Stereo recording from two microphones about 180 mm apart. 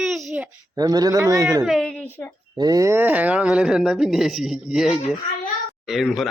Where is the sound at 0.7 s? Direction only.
20° right (ahead or behind).